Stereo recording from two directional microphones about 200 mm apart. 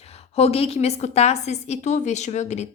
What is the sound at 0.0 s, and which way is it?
A woman's voice, 30° left (ahead or behind).